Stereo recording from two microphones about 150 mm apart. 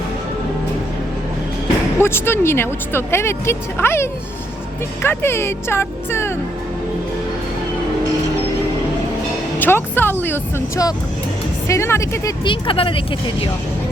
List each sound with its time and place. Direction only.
2.0 s speech: 15° left (ahead or behind)
9.6 s speech: 15° left (ahead or behind)
12.5 s speech: 35° left (ahead or behind)